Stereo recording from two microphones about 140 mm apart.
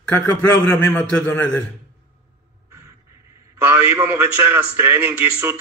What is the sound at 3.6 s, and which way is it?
A man's voice, 15° right (ahead or behind).